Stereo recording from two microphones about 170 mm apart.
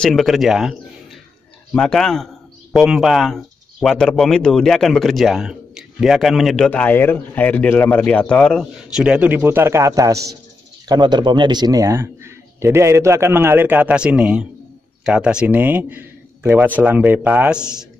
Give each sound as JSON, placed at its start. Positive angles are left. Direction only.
{"t": 0.0, "sound": "speech", "side_deg": 0}